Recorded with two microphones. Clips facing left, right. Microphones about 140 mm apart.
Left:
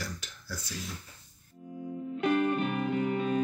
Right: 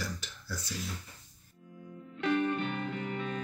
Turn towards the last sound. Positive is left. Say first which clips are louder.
# left 8 dB
turn(degrees=25)  # may be behind; listen again after turning